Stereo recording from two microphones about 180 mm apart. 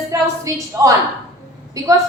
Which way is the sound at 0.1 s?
20° right (ahead or behind).